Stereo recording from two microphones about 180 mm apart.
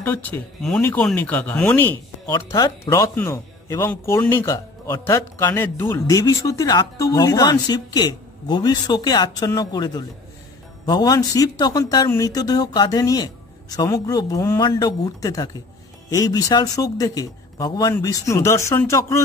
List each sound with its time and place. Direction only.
0.0 s speech: 10° left (ahead or behind)